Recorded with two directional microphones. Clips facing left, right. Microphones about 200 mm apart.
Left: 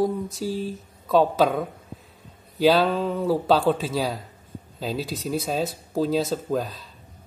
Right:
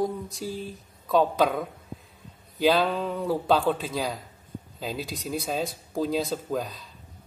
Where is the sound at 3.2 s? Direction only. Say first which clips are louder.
Left 2 dB; 5° left (ahead or behind).